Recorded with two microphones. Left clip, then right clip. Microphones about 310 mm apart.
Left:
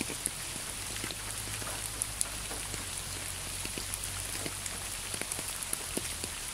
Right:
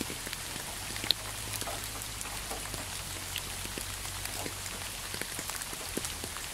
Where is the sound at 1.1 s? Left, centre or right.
Right.